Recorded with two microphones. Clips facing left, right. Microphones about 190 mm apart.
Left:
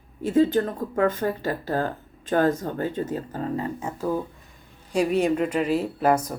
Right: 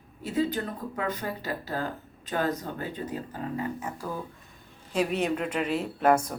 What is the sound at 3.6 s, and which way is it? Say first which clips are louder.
Speech: left 4 dB; 25° left (ahead or behind).